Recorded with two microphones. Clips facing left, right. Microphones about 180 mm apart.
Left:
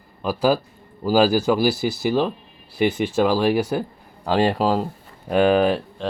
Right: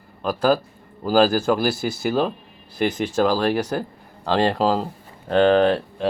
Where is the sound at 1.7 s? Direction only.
50° right (ahead or behind).